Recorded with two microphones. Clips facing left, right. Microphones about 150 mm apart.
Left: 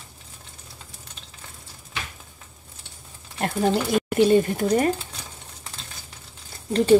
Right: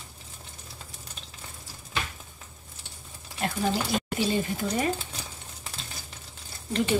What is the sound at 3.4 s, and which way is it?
Speech, 55° left (ahead or behind).